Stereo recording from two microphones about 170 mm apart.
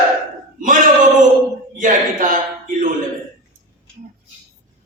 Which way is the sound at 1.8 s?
50° right (ahead or behind).